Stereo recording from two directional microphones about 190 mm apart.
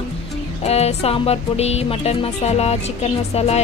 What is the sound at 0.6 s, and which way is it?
A woman's voice, 35° left (ahead or behind).